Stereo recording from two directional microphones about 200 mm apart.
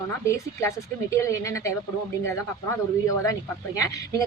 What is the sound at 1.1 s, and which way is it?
Speech, 15° left (ahead or behind).